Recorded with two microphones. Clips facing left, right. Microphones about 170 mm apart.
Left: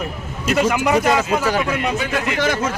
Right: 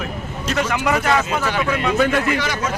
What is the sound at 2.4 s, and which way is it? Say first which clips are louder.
Speech: left 4 dB; 50° left (ahead or behind).